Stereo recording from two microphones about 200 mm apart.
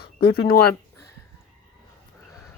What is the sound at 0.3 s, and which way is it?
Speech, 50° left (ahead or behind).